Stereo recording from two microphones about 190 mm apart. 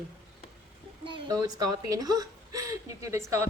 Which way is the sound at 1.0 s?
25° right (ahead or behind).